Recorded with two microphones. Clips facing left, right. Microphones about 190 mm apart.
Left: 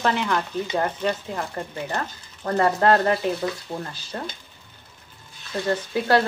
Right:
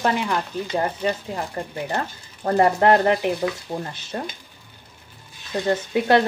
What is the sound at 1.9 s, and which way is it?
Speech, 30° right (ahead or behind).